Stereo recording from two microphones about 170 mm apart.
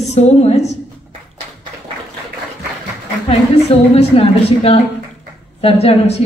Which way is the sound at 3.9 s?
35° left (ahead or behind).